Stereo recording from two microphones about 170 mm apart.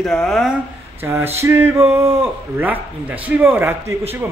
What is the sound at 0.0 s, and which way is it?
Speech, centre (ahead or behind).